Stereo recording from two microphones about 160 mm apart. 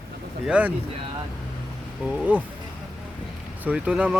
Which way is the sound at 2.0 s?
10° right (ahead or behind).